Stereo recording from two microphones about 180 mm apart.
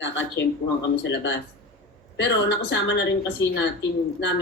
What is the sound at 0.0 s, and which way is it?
Speech, 90° left.